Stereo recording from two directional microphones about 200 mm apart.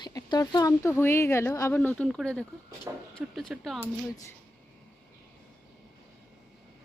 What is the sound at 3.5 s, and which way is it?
Speech, centre (ahead or behind).